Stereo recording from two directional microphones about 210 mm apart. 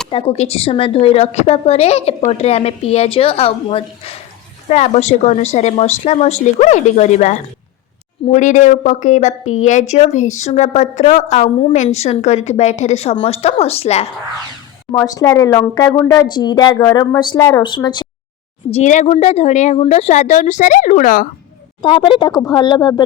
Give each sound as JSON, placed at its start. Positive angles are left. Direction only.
{"t": 0.1, "sound": "a woman's voice", "side_deg": 30}
{"t": 14.9, "sound": "a woman's voice", "side_deg": 15}
{"t": 18.7, "sound": "a woman's voice", "side_deg": 35}
{"t": 21.8, "sound": "a woman's voice", "side_deg": 25}